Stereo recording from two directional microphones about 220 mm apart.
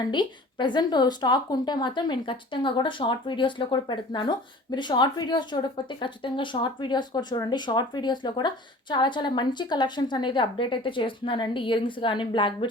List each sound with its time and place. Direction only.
0.0 s a woman's voice: 20° left (ahead or behind)